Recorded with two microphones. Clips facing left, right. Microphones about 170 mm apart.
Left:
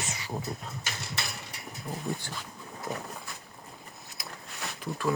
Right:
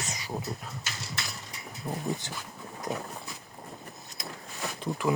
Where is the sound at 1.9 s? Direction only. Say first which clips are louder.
Right 3 dB; 25° right (ahead or behind).